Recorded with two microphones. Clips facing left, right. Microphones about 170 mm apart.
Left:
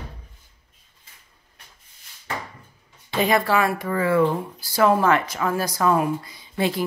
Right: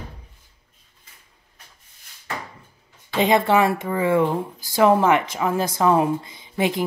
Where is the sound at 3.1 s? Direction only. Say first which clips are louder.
Right 3 dB; 20° right (ahead or behind).